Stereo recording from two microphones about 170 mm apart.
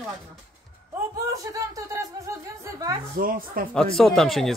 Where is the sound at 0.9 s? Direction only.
20° right (ahead or behind).